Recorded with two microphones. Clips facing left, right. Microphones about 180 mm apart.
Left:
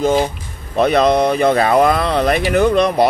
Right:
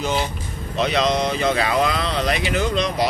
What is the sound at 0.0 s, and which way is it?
Speech, 50° left (ahead or behind).